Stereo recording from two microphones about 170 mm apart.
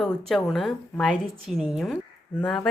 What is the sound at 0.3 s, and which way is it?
A woman's voice, 5° left (ahead or behind).